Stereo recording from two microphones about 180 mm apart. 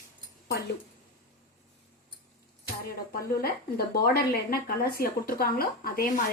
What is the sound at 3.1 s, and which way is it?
Speech, 55° left (ahead or behind).